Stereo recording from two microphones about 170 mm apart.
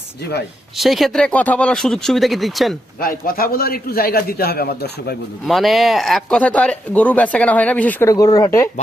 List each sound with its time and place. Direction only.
0.8 s speech: centre (ahead or behind)
3.0 s a man's voice: 55° left (ahead or behind)
5.5 s speech: centre (ahead or behind)
8.1 s speech: 20° left (ahead or behind)